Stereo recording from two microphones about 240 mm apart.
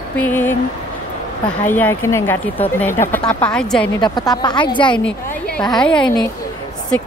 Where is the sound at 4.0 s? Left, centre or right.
Centre.